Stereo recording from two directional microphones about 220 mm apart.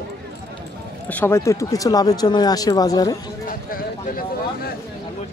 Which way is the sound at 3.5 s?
40° left (ahead or behind).